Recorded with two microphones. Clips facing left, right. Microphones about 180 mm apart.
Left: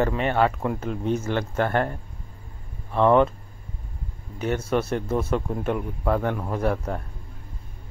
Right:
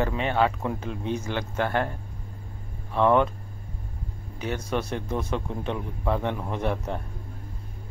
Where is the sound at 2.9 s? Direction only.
5° left (ahead or behind).